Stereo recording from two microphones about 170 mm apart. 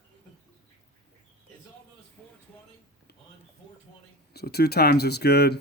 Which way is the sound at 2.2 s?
5° left (ahead or behind).